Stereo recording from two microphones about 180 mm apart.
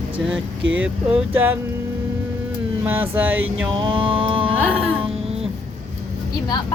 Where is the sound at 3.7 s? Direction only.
30° right (ahead or behind).